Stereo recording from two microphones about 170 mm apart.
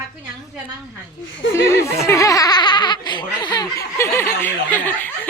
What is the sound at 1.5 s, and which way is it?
A woman's voice, 15° left (ahead or behind).